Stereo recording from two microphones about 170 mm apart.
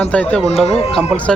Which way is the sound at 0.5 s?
40° left (ahead or behind).